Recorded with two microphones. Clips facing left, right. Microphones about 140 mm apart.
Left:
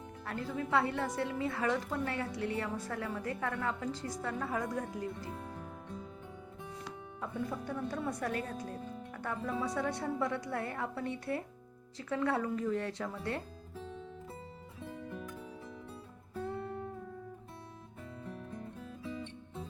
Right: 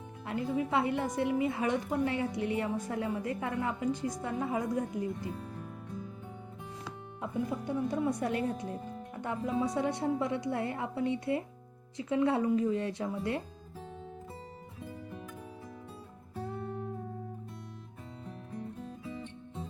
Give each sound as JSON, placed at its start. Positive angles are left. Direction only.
{"t": 0.3, "sound": "a woman's voice", "side_deg": -15}
{"t": 7.2, "sound": "a woman's voice", "side_deg": -15}
{"t": 18.8, "sound": "music", "side_deg": -25}